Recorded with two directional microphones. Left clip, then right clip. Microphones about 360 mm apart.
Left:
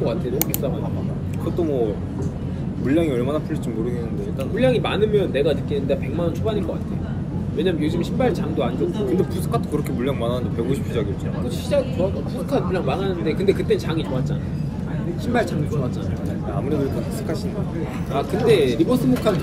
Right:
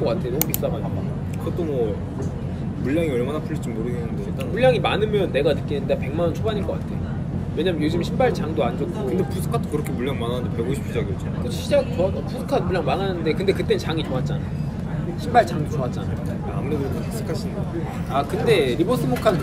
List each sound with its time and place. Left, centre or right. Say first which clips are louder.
2.9 s speech: left 2 dB; centre
4.6 s speech: right 1 dB; centre
7.5 s speech: even; centre
10.0 s speech: left 2 dB; centre
11.7 s speech: right 1 dB; centre
18.1 s speech: left 1 dB; centre